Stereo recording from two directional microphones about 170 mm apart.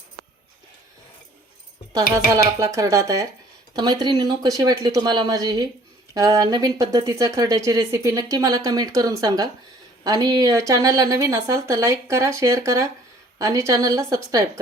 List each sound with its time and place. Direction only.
1.9 s speech: 20° right (ahead or behind)